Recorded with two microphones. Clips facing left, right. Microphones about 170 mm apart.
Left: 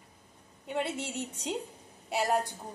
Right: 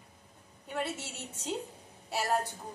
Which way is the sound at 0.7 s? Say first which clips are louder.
Left 3 dB; 15° left (ahead or behind).